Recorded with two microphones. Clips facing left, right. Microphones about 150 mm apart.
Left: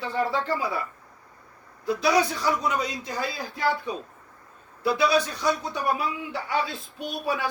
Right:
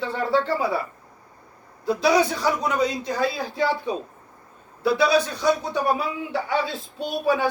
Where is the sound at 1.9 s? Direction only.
30° right (ahead or behind).